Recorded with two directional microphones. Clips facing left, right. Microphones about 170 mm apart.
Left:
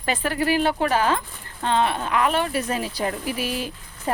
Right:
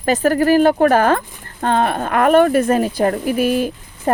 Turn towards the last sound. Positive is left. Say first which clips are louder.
# right 8 dB
turn(degrees=-50)  # may be behind; listen again after turning